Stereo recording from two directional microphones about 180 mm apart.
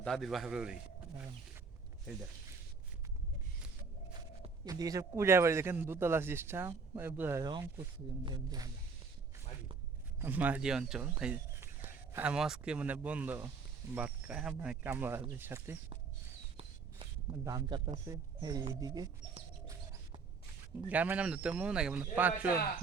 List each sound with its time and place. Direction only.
0.0 s a man's voice: centre (ahead or behind)
4.1 s speech: 20° right (ahead or behind)
8.2 s speech: 25° right (ahead or behind)
10.2 s speech: 10° right (ahead or behind)
16.6 s a sound: 30° right (ahead or behind)
17.4 s speech: 20° right (ahead or behind)
20.9 s speech: 10° right (ahead or behind)